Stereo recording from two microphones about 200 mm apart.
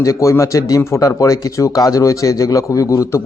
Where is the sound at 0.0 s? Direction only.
15° left (ahead or behind).